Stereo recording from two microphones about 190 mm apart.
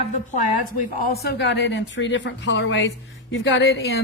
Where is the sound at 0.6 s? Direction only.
55° left (ahead or behind).